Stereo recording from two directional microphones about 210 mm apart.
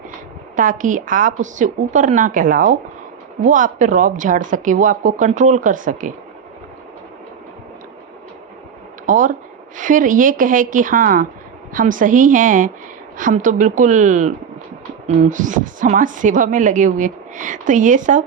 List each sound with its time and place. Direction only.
0.5 s a woman's voice: 40° right (ahead or behind)
9.0 s a woman's voice: 40° right (ahead or behind)